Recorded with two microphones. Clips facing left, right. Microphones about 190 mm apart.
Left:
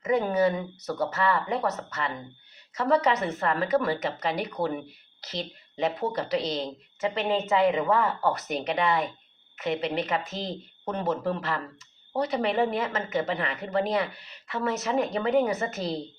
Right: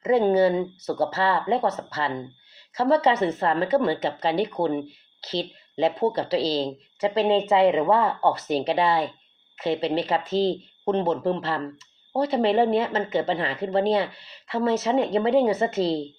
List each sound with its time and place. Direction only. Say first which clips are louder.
0.0 s a woman's voice: right 5 dB; 30° right (ahead or behind)